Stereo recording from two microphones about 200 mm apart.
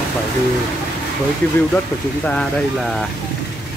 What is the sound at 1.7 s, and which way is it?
Speech, 5° left (ahead or behind).